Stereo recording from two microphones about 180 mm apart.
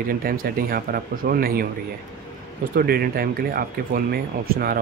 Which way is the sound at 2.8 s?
55° right (ahead or behind).